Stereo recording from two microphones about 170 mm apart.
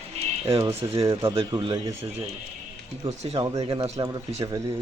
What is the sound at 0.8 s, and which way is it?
Speech, 20° right (ahead or behind).